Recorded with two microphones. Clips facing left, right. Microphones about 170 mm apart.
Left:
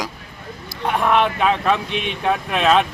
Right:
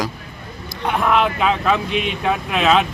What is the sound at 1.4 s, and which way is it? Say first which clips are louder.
Speech: even; centre (ahead or behind).